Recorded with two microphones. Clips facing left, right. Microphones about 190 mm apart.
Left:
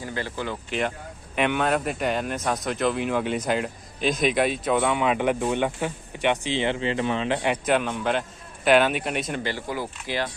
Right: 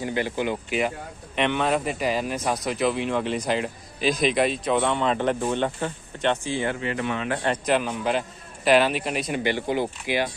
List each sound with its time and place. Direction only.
0.0 s speech: 15° right (ahead or behind)
0.7 s speech: 5° right (ahead or behind); by 7.3 s 25° left (ahead or behind)
7.4 s speech: 5° left (ahead or behind)
9.4 s speech: 20° right (ahead or behind)